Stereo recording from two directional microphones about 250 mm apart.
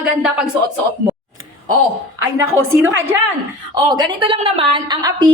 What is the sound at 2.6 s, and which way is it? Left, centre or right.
Speech, right.